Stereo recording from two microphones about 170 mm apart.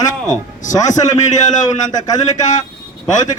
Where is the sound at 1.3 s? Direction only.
45° left (ahead or behind).